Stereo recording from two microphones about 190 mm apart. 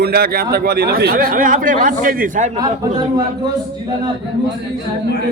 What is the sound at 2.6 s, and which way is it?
Speech, 20° right (ahead or behind).